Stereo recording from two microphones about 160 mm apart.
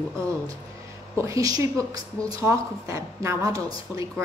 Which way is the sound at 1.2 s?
20° right (ahead or behind).